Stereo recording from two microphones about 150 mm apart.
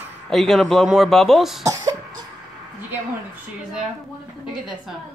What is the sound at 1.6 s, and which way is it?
Speech, 25° right (ahead or behind).